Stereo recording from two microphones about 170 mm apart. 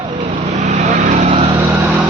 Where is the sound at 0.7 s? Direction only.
45° right (ahead or behind).